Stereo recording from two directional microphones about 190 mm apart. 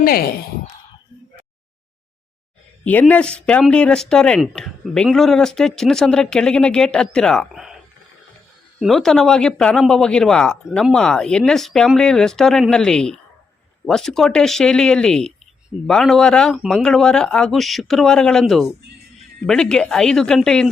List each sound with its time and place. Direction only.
0.0 s speech: 50° left (ahead or behind)
2.8 s speech: 10° left (ahead or behind)
8.8 s speech: centre (ahead or behind)